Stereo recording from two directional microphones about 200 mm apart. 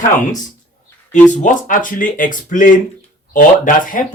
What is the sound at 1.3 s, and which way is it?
Speech, 40° left (ahead or behind).